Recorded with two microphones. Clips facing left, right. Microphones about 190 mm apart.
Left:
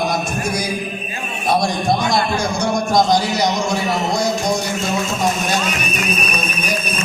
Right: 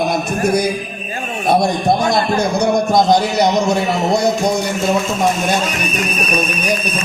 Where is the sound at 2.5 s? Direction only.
60° right (ahead or behind).